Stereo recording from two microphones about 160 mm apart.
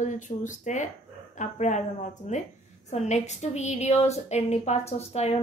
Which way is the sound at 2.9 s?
45° left (ahead or behind).